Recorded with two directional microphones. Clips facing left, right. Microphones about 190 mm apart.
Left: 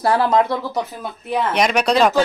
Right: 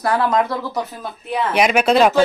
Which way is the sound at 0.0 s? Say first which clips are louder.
Left 2 dB; 25° left (ahead or behind).